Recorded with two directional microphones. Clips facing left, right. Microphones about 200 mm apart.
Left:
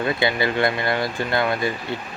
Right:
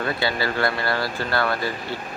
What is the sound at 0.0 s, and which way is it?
Speech, 20° left (ahead or behind).